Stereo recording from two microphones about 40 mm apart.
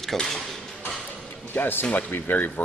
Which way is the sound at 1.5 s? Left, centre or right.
Left.